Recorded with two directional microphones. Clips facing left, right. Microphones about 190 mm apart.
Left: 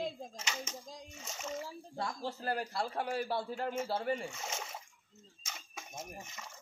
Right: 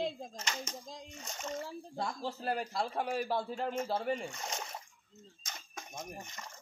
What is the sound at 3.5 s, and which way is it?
Speech, 5° left (ahead or behind).